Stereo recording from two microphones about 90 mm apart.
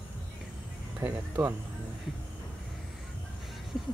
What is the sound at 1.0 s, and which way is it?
Speech, 25° right (ahead or behind).